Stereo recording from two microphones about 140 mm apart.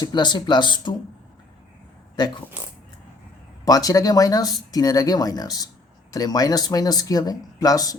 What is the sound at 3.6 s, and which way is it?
Speech, 25° left (ahead or behind).